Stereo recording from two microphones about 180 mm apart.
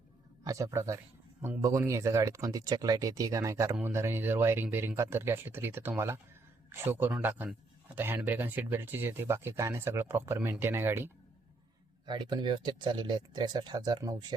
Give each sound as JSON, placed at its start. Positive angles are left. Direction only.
{"t": 0.4, "sound": "speech", "side_deg": -15}
{"t": 12.0, "sound": "speech", "side_deg": -25}